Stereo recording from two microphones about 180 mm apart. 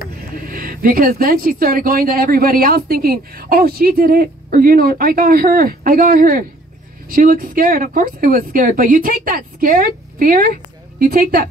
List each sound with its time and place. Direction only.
0.5 s a woman's voice: 50° right (ahead or behind)